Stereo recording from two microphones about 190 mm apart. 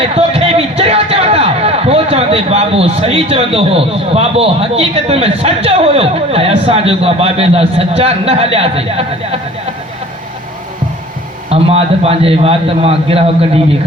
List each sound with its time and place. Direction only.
0.0 s a man's voice: 30° right (ahead or behind)
11.4 s a man's voice: 30° right (ahead or behind)